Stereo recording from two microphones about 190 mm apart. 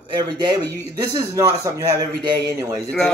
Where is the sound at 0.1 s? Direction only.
25° right (ahead or behind).